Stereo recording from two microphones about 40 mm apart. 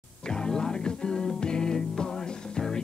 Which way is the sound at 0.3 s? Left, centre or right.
Centre.